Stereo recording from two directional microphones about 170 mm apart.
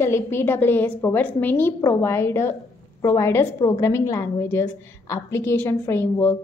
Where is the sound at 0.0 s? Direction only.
15° left (ahead or behind).